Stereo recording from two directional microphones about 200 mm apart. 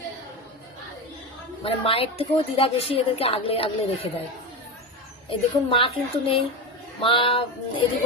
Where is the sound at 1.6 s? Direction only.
30° left (ahead or behind).